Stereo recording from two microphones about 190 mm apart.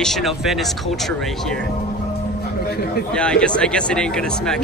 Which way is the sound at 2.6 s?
55° left (ahead or behind).